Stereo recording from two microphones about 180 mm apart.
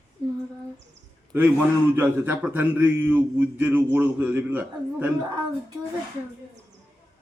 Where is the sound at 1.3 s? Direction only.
10° right (ahead or behind).